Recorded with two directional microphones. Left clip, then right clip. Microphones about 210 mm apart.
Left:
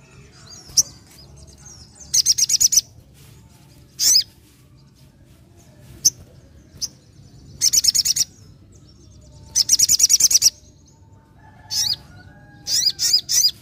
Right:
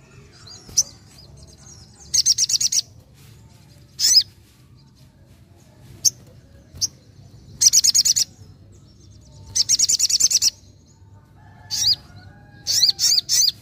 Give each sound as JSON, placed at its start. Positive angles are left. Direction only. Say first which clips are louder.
{"t": 2.0, "sound": "bird", "louder": "left 1 dB", "side_deg": 10}
{"t": 3.9, "sound": "rodents", "louder": "right 1 dB", "side_deg": 5}
{"t": 7.5, "sound": "bird", "louder": "right 2 dB", "side_deg": -15}
{"t": 9.5, "sound": "bird", "louder": "left 2 dB", "side_deg": 10}
{"t": 11.6, "sound": "bird", "louder": "right 2 dB", "side_deg": 0}
{"t": 12.6, "sound": "mouse", "louder": "right 2 dB", "side_deg": 0}